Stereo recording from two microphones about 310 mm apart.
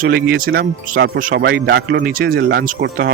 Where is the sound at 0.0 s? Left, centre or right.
Right.